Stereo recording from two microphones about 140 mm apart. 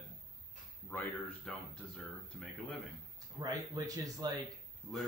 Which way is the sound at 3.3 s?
25° right (ahead or behind).